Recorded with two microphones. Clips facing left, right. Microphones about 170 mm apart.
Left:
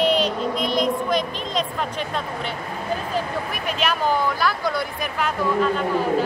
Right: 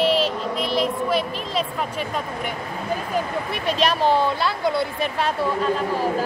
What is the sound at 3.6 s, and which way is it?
Speech, 35° right (ahead or behind).